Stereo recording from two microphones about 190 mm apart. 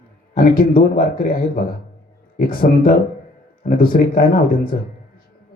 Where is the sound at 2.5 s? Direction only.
50° left (ahead or behind).